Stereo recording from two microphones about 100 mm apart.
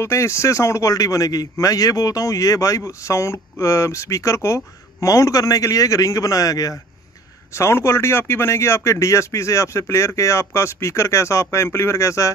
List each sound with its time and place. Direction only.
0.0 s a man's voice: 30° left (ahead or behind)